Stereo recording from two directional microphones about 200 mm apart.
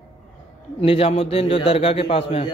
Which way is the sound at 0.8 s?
30° left (ahead or behind).